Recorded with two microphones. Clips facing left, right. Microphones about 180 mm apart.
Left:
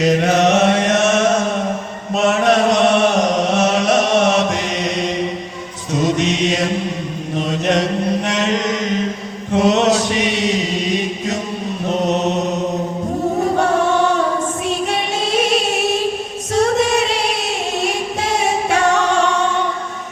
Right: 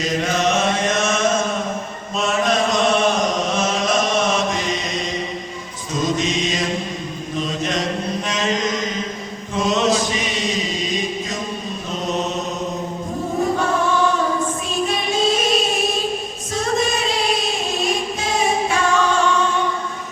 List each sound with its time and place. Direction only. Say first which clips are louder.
0.0 s chant: left 6 dB; 65° left (ahead or behind)
5.9 s music: left 4 dB; 70° left (ahead or behind)
7.3 s mantra: left 6 dB; 65° left (ahead or behind)
9.5 s chant: left 5 dB; 70° left (ahead or behind)
13.6 s choir: left 4 dB; 70° left (ahead or behind)
14.8 s music: right 1 dB; 70° left (ahead or behind)
16.6 s choir: left 6 dB; 70° left (ahead or behind)
17.8 s singing: left 2 dB; 70° left (ahead or behind)